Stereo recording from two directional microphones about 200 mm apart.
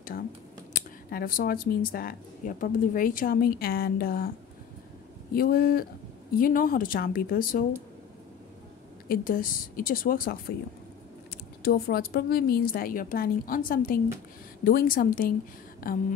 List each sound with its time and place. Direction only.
0.1 s whispering: 45° left (ahead or behind)
1.1 s a woman's voice: 45° left (ahead or behind)
5.3 s a woman's voice: 45° left (ahead or behind)
9.1 s a woman's voice: 45° left (ahead or behind)